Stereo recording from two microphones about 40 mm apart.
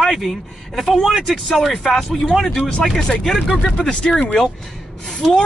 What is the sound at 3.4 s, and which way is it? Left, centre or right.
Speech, left.